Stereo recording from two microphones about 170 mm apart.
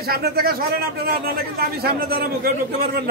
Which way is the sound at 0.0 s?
65° right (ahead or behind).